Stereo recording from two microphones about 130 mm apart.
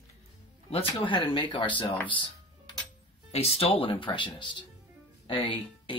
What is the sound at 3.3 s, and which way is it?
Speech, 50° left (ahead or behind).